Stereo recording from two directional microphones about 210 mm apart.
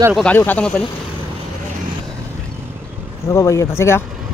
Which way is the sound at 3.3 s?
15° left (ahead or behind).